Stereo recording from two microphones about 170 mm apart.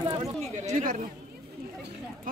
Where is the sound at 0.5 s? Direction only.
50° right (ahead or behind).